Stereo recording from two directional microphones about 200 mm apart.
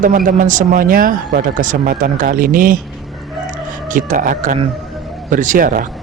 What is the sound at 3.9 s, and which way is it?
Speech, 40° right (ahead or behind).